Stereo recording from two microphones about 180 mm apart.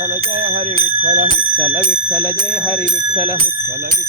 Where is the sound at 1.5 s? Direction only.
10° left (ahead or behind).